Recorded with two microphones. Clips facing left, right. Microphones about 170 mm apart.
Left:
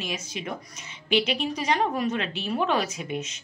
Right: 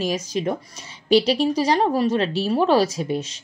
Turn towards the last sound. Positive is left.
turn(degrees=-35)  # may be behind; listen again after turning